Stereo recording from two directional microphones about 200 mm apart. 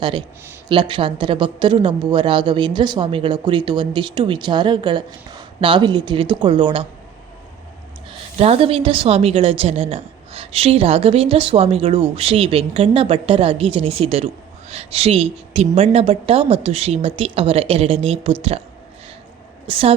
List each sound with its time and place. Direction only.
0.0 s speech: 25° right (ahead or behind)
8.4 s speech: 30° right (ahead or behind)
19.6 s speech: 30° right (ahead or behind)